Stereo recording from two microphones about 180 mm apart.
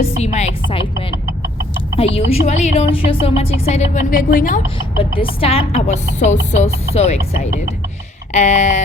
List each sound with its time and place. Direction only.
0.0 s music: 40° left (ahead or behind)
2.1 s music: 35° left (ahead or behind)
3.7 s a woman's voice: 40° left (ahead or behind)
5.1 s music: 30° left (ahead or behind)
8.3 s music: 40° left (ahead or behind)